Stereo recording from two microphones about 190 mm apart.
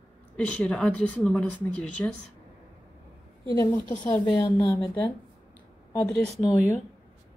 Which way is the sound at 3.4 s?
20° left (ahead or behind).